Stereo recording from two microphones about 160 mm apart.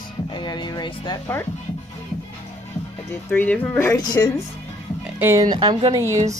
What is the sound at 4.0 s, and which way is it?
Speech, 25° left (ahead or behind).